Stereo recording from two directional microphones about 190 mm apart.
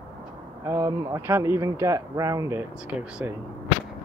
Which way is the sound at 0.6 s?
20° right (ahead or behind).